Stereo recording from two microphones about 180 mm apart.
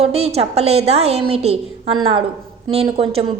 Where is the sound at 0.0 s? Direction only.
35° right (ahead or behind).